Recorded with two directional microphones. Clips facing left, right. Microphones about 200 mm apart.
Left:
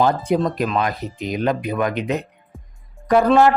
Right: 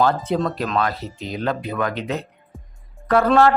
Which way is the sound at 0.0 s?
15° left (ahead or behind).